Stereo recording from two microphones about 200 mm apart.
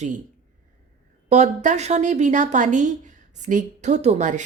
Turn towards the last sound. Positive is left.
turn(degrees=-35)  # may be behind; listen again after turning